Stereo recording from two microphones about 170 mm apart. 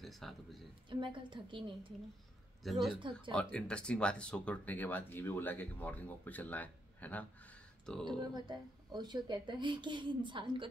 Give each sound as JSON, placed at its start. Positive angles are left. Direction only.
{"t": 0.0, "sound": "a woman's voice", "side_deg": 0}
{"t": 0.8, "sound": "a woman's voice", "side_deg": -30}
{"t": 2.6, "sound": "a woman's voice", "side_deg": 0}
{"t": 3.0, "sound": "a woman's voice", "side_deg": -30}
{"t": 3.3, "sound": "a woman's voice", "side_deg": 5}
{"t": 8.4, "sound": "a woman's voice", "side_deg": -25}